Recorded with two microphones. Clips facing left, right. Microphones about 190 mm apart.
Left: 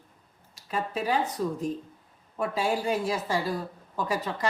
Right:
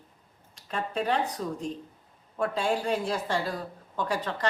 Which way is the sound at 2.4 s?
5° left (ahead or behind).